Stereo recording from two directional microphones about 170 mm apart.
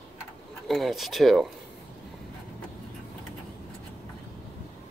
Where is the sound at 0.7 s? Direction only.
Centre (ahead or behind).